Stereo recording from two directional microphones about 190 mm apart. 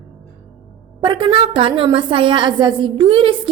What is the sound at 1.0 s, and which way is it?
A woman's voice, 25° right (ahead or behind).